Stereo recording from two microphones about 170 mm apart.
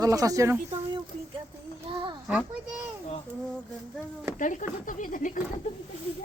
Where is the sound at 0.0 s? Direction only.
20° right (ahead or behind).